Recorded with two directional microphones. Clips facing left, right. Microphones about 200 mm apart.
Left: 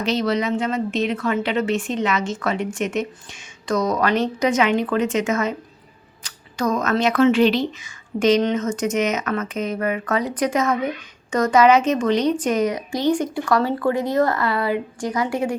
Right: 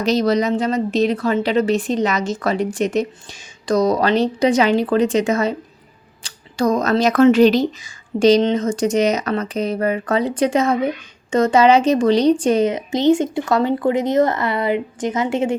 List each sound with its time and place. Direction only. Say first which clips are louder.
0.0 s speech: right 4 dB; 40° right (ahead or behind); by 15.5 s 25° right (ahead or behind)